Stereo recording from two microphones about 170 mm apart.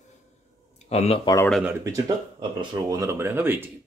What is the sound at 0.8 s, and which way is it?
Speech, 35° left (ahead or behind).